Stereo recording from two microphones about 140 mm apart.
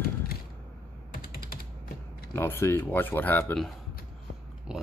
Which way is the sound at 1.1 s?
90° left.